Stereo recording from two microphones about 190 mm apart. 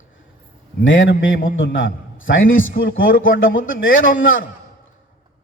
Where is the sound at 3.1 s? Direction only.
90° left.